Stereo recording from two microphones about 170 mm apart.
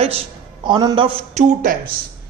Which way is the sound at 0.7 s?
25° right (ahead or behind).